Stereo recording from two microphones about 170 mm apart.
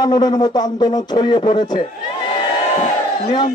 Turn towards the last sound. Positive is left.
turn(degrees=30)  # may be behind; listen again after turning